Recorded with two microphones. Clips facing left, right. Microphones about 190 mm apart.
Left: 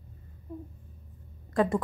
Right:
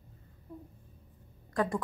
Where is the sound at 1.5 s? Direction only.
20° left (ahead or behind).